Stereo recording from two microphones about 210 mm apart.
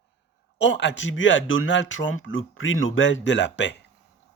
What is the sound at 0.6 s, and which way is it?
A man's voice, 55° left (ahead or behind).